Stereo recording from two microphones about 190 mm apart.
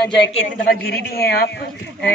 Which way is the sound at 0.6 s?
55° left (ahead or behind).